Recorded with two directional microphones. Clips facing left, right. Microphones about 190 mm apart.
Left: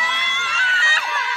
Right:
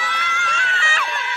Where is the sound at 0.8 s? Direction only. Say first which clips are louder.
Right 2 dB; 35° left (ahead or behind).